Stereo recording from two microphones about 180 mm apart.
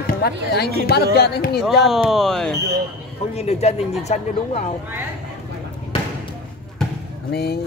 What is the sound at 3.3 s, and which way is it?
Speech, 35° left (ahead or behind).